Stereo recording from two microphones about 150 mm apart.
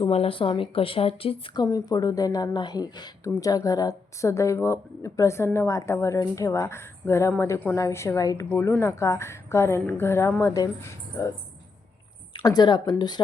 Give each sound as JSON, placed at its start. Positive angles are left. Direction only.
{"t": 0.0, "sound": "speech", "side_deg": 40}
{"t": 1.6, "sound": "a woman's voice", "side_deg": 25}
{"t": 8.4, "sound": "a woman's voice", "side_deg": 15}
{"t": 12.3, "sound": "a woman's voice", "side_deg": 30}